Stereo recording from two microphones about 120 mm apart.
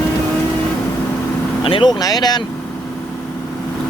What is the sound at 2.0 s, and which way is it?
Speech, 35° left (ahead or behind).